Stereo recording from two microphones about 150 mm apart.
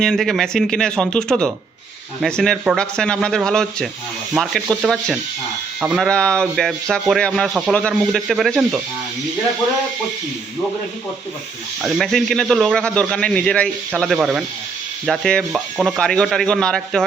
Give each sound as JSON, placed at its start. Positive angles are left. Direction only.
{"t": 0.0, "sound": "speech", "side_deg": 0}
{"t": 6.1, "sound": "speech", "side_deg": 5}
{"t": 11.8, "sound": "speech", "side_deg": 0}